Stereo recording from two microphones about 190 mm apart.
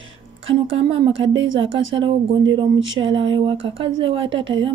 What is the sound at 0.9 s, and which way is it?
Speech, 30° right (ahead or behind).